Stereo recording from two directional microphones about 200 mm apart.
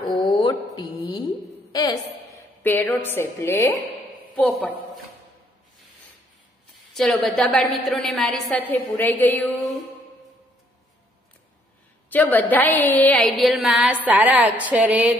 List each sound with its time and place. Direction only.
0.1 s a sound: 25° left (ahead or behind)
0.7 s a woman's voice: 20° left (ahead or behind); by 4.7 s 5° left (ahead or behind)
7.0 s a woman's voice: centre (ahead or behind)
12.1 s a woman's voice: 10° left (ahead or behind); by 15.0 s 5° right (ahead or behind)